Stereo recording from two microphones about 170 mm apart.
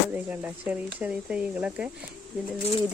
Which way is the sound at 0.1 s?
10° right (ahead or behind).